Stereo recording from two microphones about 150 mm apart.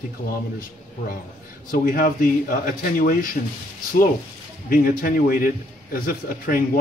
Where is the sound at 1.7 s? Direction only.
70° left (ahead or behind).